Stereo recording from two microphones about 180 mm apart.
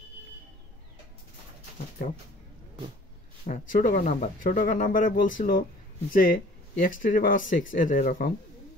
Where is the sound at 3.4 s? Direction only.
45° left (ahead or behind).